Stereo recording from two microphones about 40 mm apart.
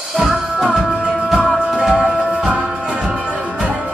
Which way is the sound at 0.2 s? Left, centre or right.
Centre.